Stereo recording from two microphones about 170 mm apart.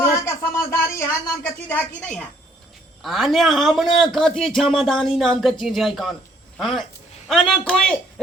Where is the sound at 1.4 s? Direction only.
10° left (ahead or behind).